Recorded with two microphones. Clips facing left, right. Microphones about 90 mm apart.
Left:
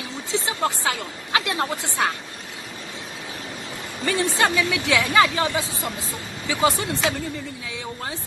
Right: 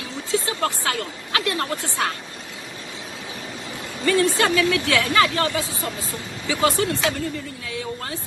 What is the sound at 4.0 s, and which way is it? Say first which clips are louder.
Speech: right 3 dB; 15° left (ahead or behind).